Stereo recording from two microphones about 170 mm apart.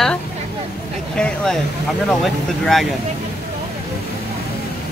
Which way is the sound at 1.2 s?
5° left (ahead or behind).